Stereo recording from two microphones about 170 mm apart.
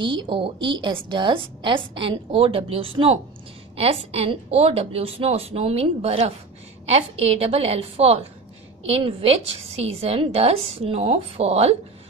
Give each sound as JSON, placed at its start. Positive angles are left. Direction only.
{"t": 0.0, "sound": "a woman's voice", "side_deg": -30}